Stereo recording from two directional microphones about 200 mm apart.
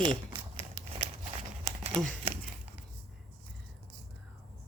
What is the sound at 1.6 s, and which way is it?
Crumpling, 30° right (ahead or behind).